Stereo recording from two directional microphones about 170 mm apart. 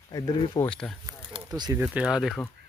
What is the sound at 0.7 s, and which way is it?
Speech, 5° left (ahead or behind).